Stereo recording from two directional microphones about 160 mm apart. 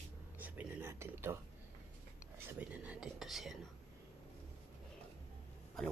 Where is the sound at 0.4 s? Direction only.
10° right (ahead or behind).